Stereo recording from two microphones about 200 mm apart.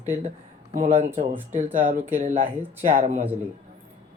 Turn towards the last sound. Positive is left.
turn(degrees=-35)  # may be behind; listen again after turning